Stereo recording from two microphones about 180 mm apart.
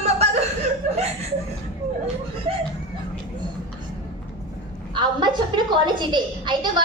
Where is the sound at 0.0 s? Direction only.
35° right (ahead or behind).